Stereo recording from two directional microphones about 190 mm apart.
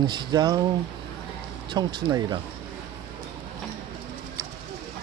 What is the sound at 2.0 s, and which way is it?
Speech, 20° right (ahead or behind).